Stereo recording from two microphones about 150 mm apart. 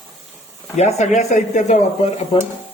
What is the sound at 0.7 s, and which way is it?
Speech, 50° left (ahead or behind).